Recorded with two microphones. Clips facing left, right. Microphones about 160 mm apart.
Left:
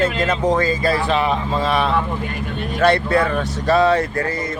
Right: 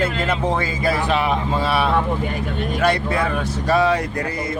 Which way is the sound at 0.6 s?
10° right (ahead or behind).